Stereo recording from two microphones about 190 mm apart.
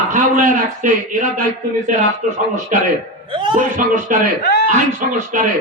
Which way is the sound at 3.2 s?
25° right (ahead or behind).